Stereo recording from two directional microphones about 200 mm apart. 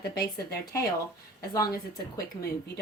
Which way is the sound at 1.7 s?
50° left (ahead or behind).